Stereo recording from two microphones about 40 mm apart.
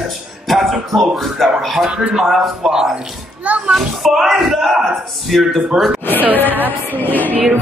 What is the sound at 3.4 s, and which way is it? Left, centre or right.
Speech, right.